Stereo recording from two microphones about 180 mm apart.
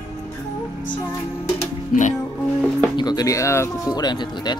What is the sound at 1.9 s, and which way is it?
Speech, 45° left (ahead or behind).